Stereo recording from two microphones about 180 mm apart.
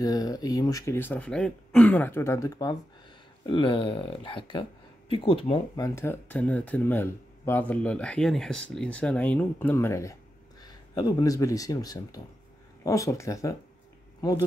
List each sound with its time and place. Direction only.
0.0 s speech: 20° left (ahead or behind)
5.8 s speech: 15° left (ahead or behind)